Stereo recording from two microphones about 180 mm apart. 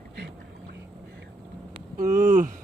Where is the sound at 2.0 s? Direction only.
45° right (ahead or behind).